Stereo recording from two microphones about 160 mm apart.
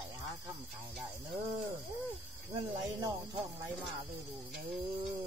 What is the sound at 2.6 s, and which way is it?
Speech, 20° right (ahead or behind).